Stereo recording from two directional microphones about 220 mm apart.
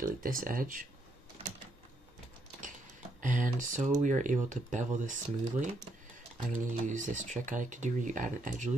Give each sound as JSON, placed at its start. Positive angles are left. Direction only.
{"t": 0.0, "sound": "speech", "side_deg": -40}
{"t": 3.2, "sound": "speech", "side_deg": -35}